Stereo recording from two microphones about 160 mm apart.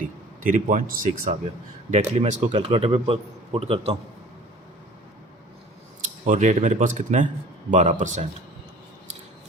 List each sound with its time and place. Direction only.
0.4 s speech: 55° right (ahead or behind)
1.9 s speech: 45° right (ahead or behind)
2.5 s a man's voice: 35° right (ahead or behind)
6.0 s speech: 50° right (ahead or behind)